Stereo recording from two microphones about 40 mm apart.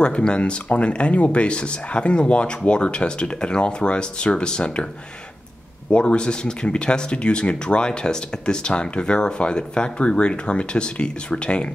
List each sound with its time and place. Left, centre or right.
0.0 s speech: left
5.9 s speech: left